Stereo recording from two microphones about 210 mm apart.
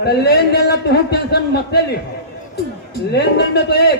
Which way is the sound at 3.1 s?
50° left (ahead or behind).